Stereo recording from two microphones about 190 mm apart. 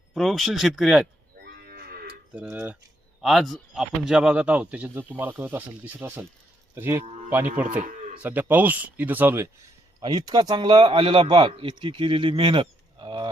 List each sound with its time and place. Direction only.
0.1 s speech: centre (ahead or behind)
1.4 s livestock: 55° right (ahead or behind)
2.3 s speech: 10° right (ahead or behind)
7.0 s speech: 35° right (ahead or behind)
7.3 s speech: 10° right (ahead or behind)
7.8 s livestock: 45° right (ahead or behind)
8.2 s speech: 10° right (ahead or behind)
10.0 s a man's voice: 20° right (ahead or behind)